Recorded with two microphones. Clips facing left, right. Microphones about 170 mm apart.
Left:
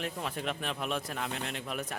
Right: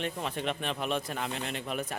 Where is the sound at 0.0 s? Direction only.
Centre (ahead or behind).